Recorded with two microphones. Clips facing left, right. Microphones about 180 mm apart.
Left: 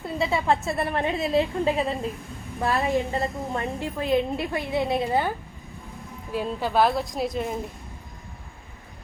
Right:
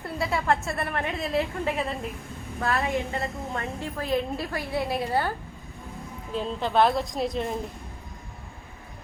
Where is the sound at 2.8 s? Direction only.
35° left (ahead or behind).